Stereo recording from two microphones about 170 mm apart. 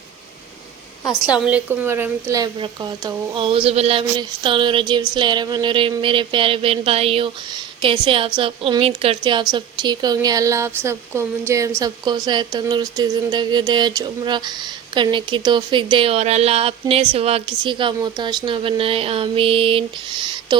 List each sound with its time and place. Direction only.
1.3 s a woman's voice: 10° right (ahead or behind); by 20.6 s 30° right (ahead or behind)